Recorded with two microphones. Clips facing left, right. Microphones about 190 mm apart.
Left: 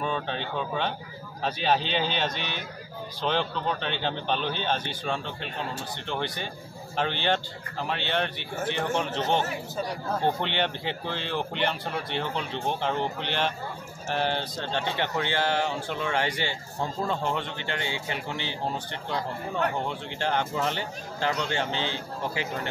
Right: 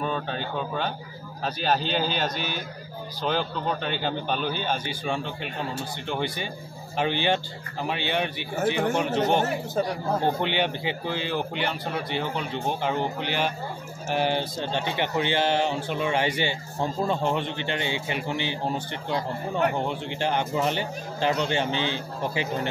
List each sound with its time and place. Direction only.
0.0 s a man's voice: 5° right (ahead or behind)
10.4 s speech: 5° right (ahead or behind)